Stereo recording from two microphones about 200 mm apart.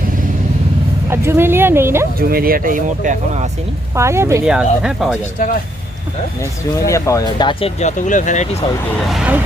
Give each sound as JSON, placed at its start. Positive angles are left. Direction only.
{"t": 1.1, "sound": "speech", "side_deg": -10}
{"t": 2.1, "sound": "speech", "side_deg": -50}
{"t": 3.9, "sound": "speech", "side_deg": -15}
{"t": 6.8, "sound": "speech", "side_deg": 15}
{"t": 7.8, "sound": "speech", "side_deg": 35}
{"t": 9.0, "sound": "speech", "side_deg": 0}